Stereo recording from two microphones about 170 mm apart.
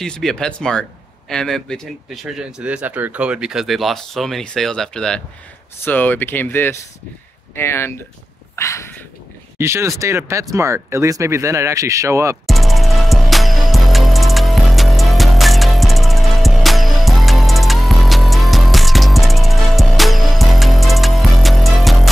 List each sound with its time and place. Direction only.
0.0 s speech: 5° left (ahead or behind)
9.6 s speech: 15° right (ahead or behind)
12.4 s music: centre (ahead or behind)